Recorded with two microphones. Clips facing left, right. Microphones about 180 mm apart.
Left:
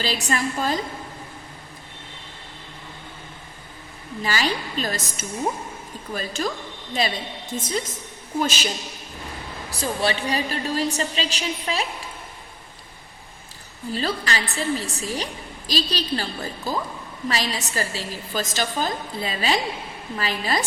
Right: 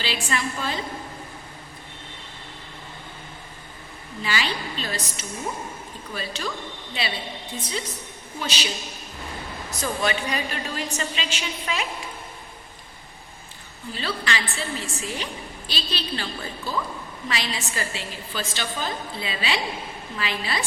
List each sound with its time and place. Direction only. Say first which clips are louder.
0.0 s a woman's voice: left 3 dB; 40° left (ahead or behind)
4.2 s a woman's voice: left 3 dB; 40° left (ahead or behind)
9.6 s a woman's voice: left 2 dB; 30° left (ahead or behind)
13.9 s a woman's voice: left 3 dB; 40° left (ahead or behind)